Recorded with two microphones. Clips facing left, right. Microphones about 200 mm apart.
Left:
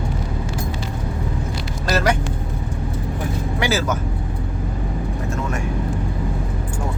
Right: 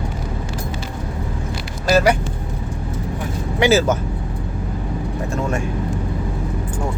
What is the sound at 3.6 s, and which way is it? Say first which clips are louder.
Speech: right 7 dB; 25° right (ahead or behind).